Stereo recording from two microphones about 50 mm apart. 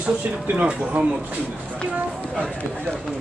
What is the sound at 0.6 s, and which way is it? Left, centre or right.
Speech, right.